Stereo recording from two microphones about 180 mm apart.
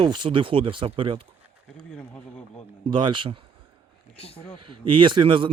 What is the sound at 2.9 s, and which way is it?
Speech, 25° right (ahead or behind).